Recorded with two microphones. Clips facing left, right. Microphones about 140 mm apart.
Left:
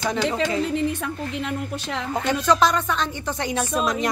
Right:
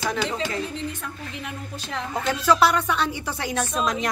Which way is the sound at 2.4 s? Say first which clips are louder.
Right 1 dB; 10° right (ahead or behind).